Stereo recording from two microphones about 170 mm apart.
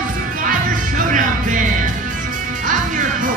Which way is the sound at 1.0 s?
50° right (ahead or behind).